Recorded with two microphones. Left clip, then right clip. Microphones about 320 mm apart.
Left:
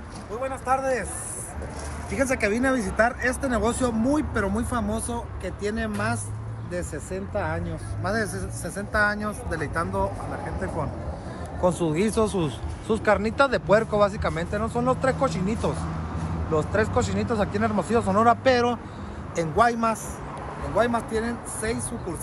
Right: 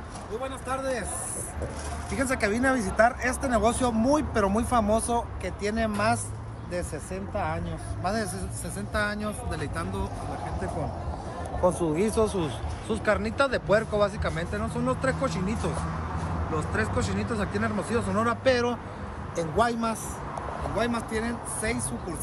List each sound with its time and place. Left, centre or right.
2.1 s speech: centre
11.9 s speech: left
20.7 s speech: centre